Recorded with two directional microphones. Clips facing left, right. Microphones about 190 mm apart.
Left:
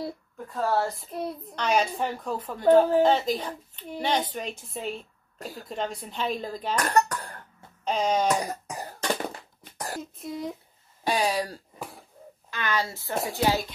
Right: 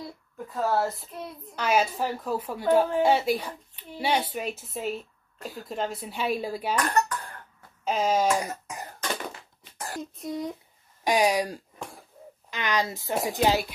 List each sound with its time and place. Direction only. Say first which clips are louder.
0.5 s a woman's voice: even; centre (ahead or behind)
1.1 s a woman's voice: left 6 dB; 40° left (ahead or behind)
1.5 s a woman's voice: right 1 dB; 5° right (ahead or behind)
6.8 s cough: left 4 dB; 40° left (ahead or behind)
7.8 s a woman's voice: right 1 dB; 5° right (ahead or behind)
8.3 s cough: even; 35° left (ahead or behind)
9.7 s a sound: left 1 dB; 40° left (ahead or behind)
10.1 s a woman's voice: right 4 dB; centre (ahead or behind)
11.1 s a woman's voice: right 3 dB; 15° right (ahead or behind)